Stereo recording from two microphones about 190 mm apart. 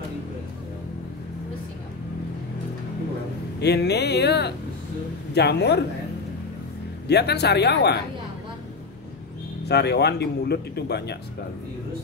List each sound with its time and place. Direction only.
3.6 s speech: 60° left (ahead or behind)
7.1 s speech: 60° left (ahead or behind)
9.7 s speech: 60° left (ahead or behind)